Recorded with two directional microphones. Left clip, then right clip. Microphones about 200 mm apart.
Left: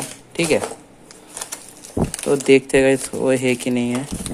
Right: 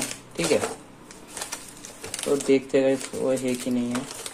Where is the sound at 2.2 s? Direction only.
35° left (ahead or behind).